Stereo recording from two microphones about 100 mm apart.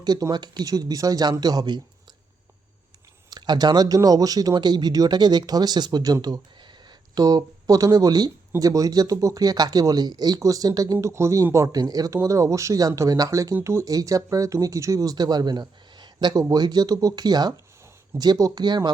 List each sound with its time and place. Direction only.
0.0 s speech: 45° right (ahead or behind)
3.2 s speech: 45° right (ahead or behind)